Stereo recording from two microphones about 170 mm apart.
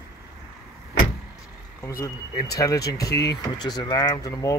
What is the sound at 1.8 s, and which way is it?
Speech, 20° left (ahead or behind).